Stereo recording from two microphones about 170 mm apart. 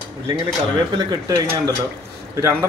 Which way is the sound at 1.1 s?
20° right (ahead or behind).